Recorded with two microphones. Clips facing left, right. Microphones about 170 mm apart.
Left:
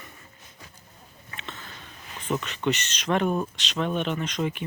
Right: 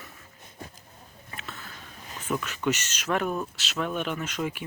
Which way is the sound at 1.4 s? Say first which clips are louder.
Left 1 dB; 5° right (ahead or behind).